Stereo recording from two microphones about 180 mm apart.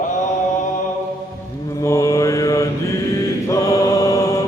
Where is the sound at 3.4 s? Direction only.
20° left (ahead or behind).